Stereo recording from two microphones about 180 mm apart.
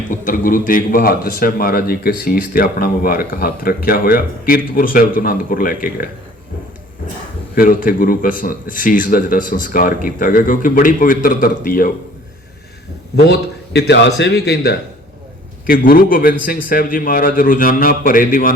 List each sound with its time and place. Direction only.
0.1 s a man's voice: 50° left (ahead or behind)
7.5 s a man's voice: 50° left (ahead or behind)
13.1 s a man's voice: 65° left (ahead or behind); by 18.5 s 50° left (ahead or behind)